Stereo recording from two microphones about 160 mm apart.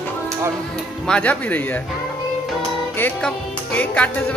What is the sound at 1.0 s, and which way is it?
Speech, 5° left (ahead or behind).